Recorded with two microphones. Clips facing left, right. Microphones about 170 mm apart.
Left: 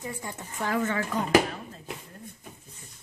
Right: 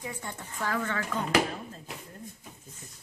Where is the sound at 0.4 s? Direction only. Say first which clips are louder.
Left 4 dB; 20° left (ahead or behind).